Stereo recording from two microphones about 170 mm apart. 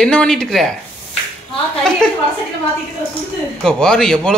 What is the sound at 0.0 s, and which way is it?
Speech, 5° left (ahead or behind).